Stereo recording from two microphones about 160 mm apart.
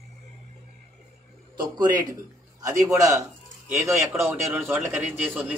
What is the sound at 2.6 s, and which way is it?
Speech, 20° right (ahead or behind).